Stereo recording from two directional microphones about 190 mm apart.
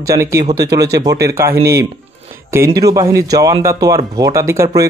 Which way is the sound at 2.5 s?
15° right (ahead or behind).